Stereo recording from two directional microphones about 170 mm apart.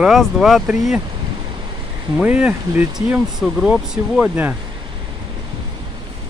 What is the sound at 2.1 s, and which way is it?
Speech, 5° right (ahead or behind).